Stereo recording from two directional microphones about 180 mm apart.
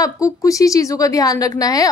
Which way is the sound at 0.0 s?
20° left (ahead or behind).